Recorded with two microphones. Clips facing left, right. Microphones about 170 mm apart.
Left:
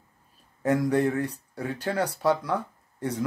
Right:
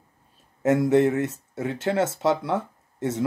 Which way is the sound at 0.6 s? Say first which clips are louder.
Right 4 dB; 25° right (ahead or behind).